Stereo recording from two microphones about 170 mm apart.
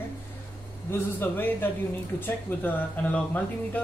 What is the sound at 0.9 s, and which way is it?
Speech, 10° left (ahead or behind).